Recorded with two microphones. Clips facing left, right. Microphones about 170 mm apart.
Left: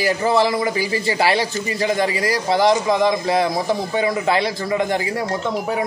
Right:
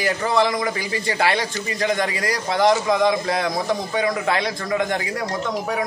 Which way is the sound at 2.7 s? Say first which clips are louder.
Left 1 dB; 30° left (ahead or behind).